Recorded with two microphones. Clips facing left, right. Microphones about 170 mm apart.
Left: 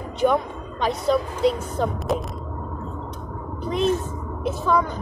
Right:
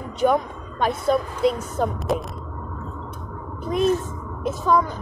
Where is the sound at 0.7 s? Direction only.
50° right (ahead or behind).